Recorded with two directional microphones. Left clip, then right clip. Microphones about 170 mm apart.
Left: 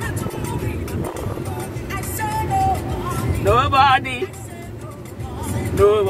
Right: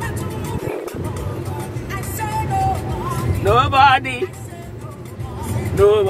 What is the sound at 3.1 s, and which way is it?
Vehicle, 15° right (ahead or behind).